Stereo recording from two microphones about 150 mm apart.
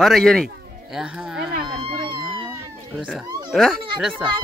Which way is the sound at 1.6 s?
35° right (ahead or behind).